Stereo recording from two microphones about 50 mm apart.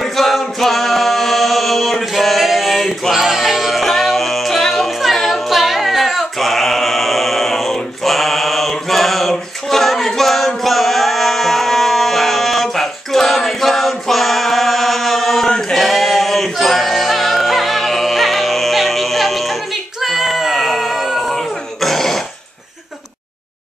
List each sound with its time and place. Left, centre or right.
0.0 s a capella: centre
15.7 s choir: centre
20.0 s a sound: centre